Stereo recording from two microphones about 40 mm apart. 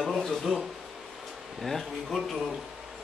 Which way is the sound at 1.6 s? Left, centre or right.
Centre.